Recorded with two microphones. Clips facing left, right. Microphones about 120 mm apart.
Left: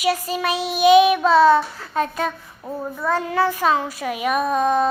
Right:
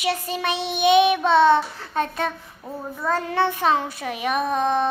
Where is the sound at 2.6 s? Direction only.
20° left (ahead or behind).